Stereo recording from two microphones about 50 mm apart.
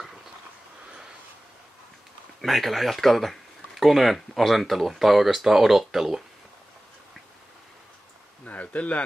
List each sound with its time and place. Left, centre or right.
2.4 s speech: centre
8.5 s speech: left